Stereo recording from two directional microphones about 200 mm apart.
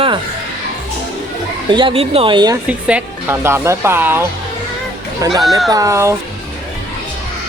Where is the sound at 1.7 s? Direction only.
25° right (ahead or behind).